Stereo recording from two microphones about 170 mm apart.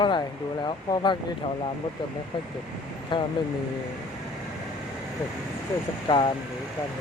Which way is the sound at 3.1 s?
30° left (ahead or behind).